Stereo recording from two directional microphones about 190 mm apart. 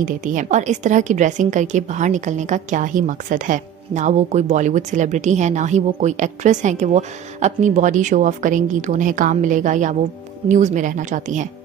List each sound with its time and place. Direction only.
0.0 s a woman's voice: 40° right (ahead or behind)